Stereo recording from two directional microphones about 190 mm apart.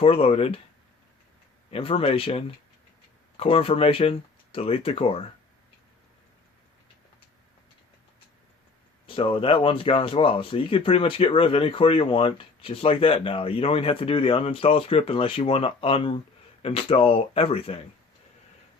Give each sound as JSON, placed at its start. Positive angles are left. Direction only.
{"t": 0.0, "sound": "speech", "side_deg": 30}
{"t": 1.7, "sound": "speech", "side_deg": 30}
{"t": 9.0, "sound": "speech", "side_deg": 30}